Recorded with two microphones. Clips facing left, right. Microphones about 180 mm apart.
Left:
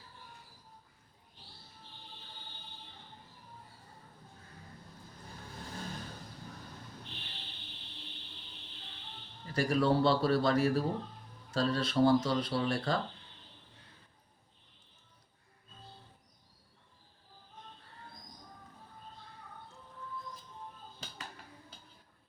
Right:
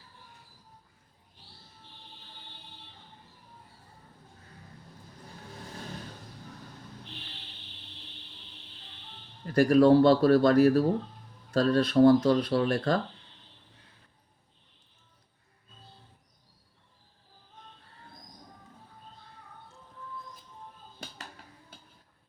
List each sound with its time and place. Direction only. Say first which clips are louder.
9.5 s speech: right 10 dB; 55° right (ahead or behind)